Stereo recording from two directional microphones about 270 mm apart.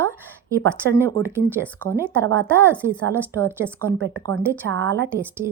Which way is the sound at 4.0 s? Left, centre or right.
Right.